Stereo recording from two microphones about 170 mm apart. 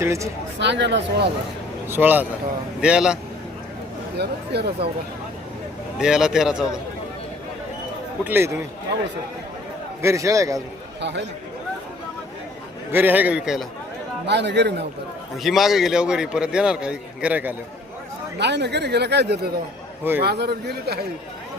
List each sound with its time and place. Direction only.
0.0 s a man's voice: 15° right (ahead or behind)
0.6 s speech: 90° right
1.9 s a man's voice: 10° right (ahead or behind)
4.2 s speech: 75° right (ahead or behind)
6.0 s a man's voice: 5° right (ahead or behind)
8.2 s a man's voice: 10° right (ahead or behind)
10.0 s a man's voice: 15° right (ahead or behind)
11.0 s speech: 90° right
12.9 s a man's voice: 10° right (ahead or behind)
14.3 s a man's voice: 90° right
15.4 s a man's voice: centre (ahead or behind)
18.3 s speech: 80° right